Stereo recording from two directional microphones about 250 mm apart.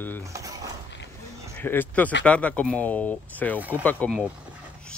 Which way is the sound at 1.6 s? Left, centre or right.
Centre.